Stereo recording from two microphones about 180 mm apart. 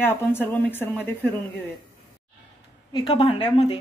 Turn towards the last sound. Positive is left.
turn(degrees=25)  # may be behind; listen again after turning